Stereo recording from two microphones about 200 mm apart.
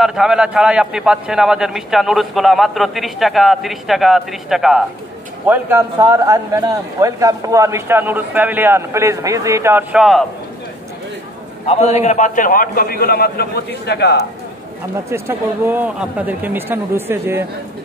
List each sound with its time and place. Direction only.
0.0 s a man's voice: 5° right (ahead or behind)
5.5 s a man's voice: 10° right (ahead or behind)
11.6 s a man's voice: 30° left (ahead or behind); by 14.2 s 55° left (ahead or behind)
15.0 s a man's voice: 15° right (ahead or behind)